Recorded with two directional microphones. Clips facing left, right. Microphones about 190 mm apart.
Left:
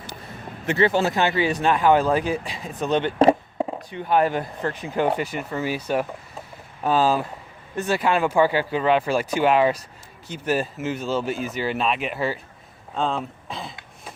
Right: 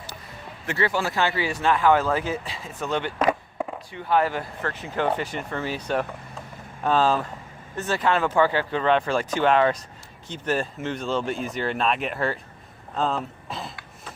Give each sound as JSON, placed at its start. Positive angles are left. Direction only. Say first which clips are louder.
{"t": 0.7, "sound": "speech", "louder": "left 5 dB", "side_deg": 20}